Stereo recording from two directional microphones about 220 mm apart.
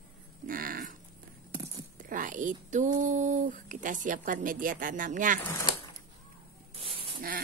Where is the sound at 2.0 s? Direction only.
35° right (ahead or behind).